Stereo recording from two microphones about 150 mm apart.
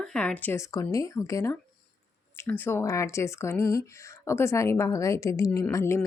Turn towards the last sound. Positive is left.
turn(degrees=20)  # may be behind; listen again after turning